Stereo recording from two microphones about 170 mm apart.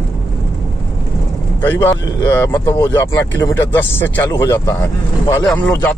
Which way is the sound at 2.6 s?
20° left (ahead or behind).